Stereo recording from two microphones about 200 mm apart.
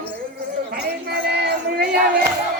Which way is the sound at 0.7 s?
50° right (ahead or behind).